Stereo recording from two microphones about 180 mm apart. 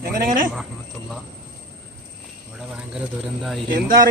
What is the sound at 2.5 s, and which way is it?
Bird, 5° right (ahead or behind).